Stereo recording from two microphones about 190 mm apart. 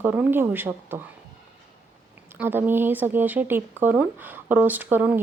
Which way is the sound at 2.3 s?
10° right (ahead or behind).